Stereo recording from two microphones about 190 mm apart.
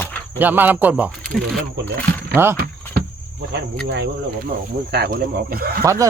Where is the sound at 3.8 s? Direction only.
65° right (ahead or behind).